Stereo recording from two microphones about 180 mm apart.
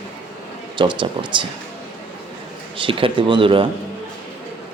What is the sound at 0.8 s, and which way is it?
Speech, 25° right (ahead or behind).